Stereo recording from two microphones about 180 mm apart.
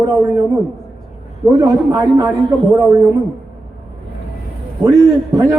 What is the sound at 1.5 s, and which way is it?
Speech, 20° right (ahead or behind).